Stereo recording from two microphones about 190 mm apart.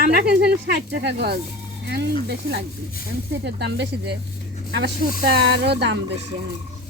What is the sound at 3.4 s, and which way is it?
Speech, 65° right (ahead or behind).